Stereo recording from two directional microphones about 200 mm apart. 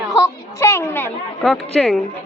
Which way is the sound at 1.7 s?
Centre (ahead or behind).